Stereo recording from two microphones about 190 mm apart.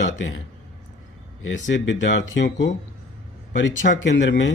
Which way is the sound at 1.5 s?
75° left (ahead or behind).